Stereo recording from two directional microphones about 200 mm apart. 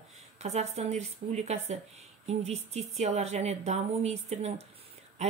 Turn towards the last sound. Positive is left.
turn(degrees=-35)  # may be behind; listen again after turning